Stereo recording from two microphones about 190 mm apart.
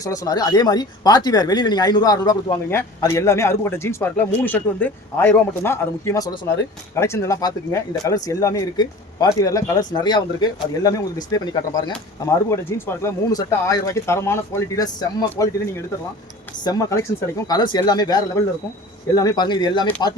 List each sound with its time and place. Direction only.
0.0 s speech: 20° left (ahead or behind)
16.6 s speech: 15° left (ahead or behind)